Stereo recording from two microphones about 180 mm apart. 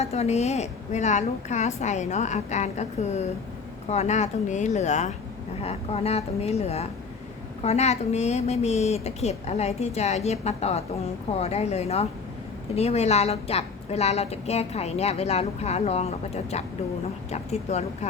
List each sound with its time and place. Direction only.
0.0 s a woman's voice: 35° left (ahead or behind)